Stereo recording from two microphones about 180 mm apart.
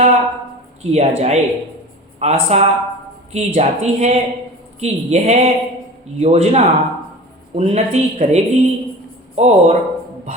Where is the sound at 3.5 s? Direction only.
35° right (ahead or behind).